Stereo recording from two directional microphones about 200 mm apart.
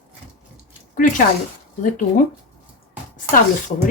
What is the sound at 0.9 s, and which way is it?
Speech, 40° left (ahead or behind).